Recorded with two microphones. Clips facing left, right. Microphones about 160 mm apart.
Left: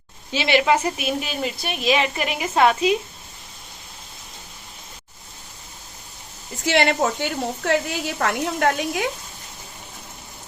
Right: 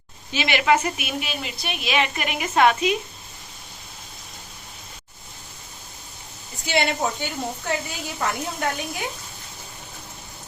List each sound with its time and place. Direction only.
0.3 s a woman's voice: 30° left (ahead or behind)
6.7 s a woman's voice: 80° left